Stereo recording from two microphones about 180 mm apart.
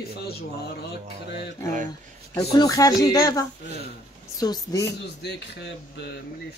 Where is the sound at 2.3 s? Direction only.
20° left (ahead or behind).